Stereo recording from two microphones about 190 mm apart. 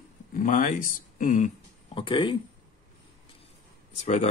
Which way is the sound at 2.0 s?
25° left (ahead or behind).